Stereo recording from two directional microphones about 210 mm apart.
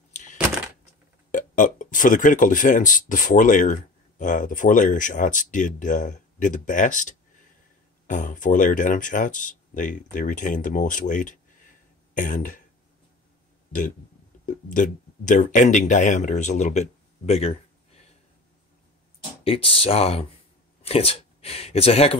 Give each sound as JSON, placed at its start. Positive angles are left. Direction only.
{"t": 0.1, "sound": "a sound", "side_deg": 35}
{"t": 1.3, "sound": "speech", "side_deg": 40}
{"t": 13.7, "sound": "burping", "side_deg": 40}
{"t": 14.4, "sound": "speech", "side_deg": 40}
{"t": 19.4, "sound": "speech", "side_deg": 25}